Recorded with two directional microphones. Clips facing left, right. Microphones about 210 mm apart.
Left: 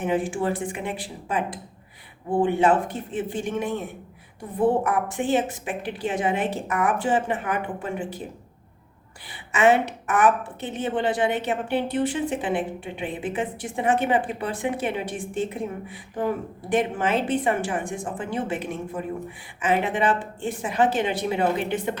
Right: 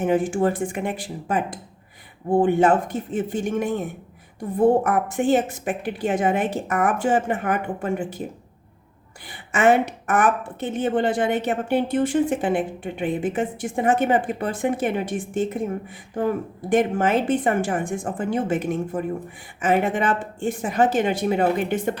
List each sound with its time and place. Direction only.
0.0 s a woman's voice: 45° right (ahead or behind)
9.5 s a woman's voice: 45° right (ahead or behind)